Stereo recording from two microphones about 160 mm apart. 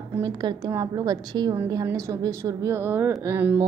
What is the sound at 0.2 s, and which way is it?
A woman's voice, 25° right (ahead or behind).